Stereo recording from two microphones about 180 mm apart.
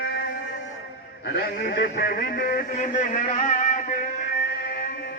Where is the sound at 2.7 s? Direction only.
40° left (ahead or behind).